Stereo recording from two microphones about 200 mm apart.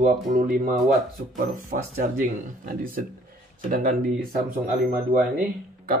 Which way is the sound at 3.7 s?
40° right (ahead or behind).